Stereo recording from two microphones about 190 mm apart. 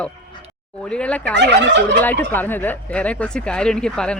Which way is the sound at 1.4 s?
65° right (ahead or behind).